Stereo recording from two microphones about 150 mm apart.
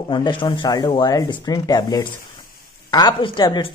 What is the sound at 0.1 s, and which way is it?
Speech, 30° left (ahead or behind).